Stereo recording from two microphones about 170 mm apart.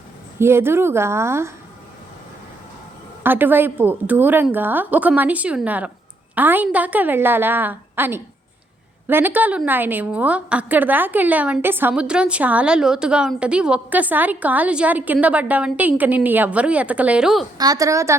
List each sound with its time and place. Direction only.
0.3 s a woman's voice: 15° right (ahead or behind)
3.2 s a woman's voice: 10° right (ahead or behind)
17.6 s a woman's voice: 20° right (ahead or behind)